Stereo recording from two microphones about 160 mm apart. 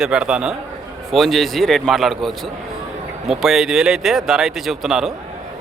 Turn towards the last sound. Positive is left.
turn(degrees=0)  # may be behind; listen again after turning